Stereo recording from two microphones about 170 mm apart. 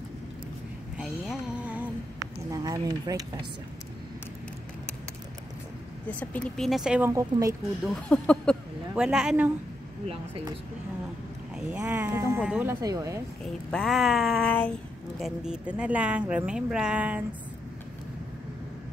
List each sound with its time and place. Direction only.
0.9 s a sound: centre (ahead or behind)
2.5 s speech: 20° right (ahead or behind)
6.0 s speech: 10° left (ahead or behind)
7.1 s speech: 20° right (ahead or behind)
7.8 s speech: 5° left (ahead or behind)
10.0 s speech: 35° right (ahead or behind)
11.5 s speech: 10° right (ahead or behind)
12.8 s speech: 20° right (ahead or behind)
13.4 s speech: 5° left (ahead or behind)